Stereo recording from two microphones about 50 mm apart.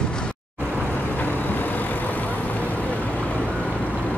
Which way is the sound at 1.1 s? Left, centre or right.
Left.